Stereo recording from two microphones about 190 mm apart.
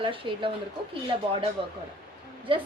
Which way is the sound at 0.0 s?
25° right (ahead or behind).